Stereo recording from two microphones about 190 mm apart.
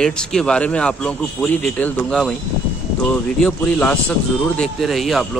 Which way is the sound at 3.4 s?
5° left (ahead or behind).